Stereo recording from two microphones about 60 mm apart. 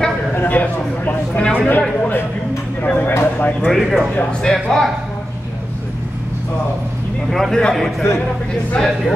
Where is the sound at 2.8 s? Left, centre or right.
Left.